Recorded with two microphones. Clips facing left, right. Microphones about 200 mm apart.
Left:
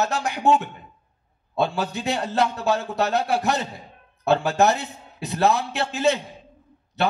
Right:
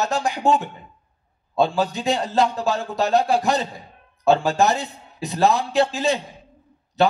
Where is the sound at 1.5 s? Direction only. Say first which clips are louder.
Right 4 dB; 60° left (ahead or behind).